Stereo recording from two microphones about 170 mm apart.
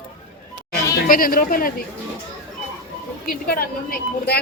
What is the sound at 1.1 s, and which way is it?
Speech, 55° left (ahead or behind).